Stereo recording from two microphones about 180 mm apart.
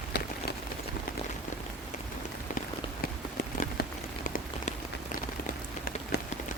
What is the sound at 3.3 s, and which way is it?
Rain on surface, 50° left (ahead or behind).